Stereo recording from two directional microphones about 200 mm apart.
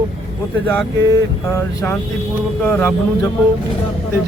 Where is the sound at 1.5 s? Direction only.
15° left (ahead or behind).